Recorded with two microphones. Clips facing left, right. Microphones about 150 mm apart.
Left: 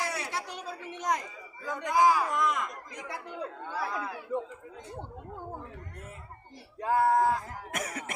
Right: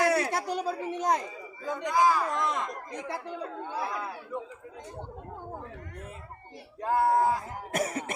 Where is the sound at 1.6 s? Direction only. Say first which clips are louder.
Right 3 dB; 20° right (ahead or behind).